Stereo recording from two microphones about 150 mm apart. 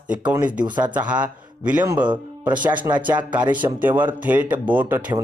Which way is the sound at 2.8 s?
10° right (ahead or behind).